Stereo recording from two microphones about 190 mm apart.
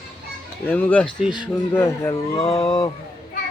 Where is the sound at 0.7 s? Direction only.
5° left (ahead or behind).